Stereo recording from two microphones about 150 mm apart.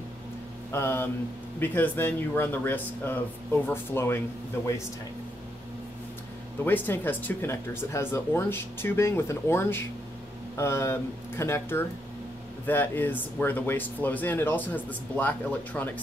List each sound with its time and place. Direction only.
0.7 s a sound: 15° left (ahead or behind)
1.6 s speech: 15° left (ahead or behind)
6.6 s speech: 10° left (ahead or behind)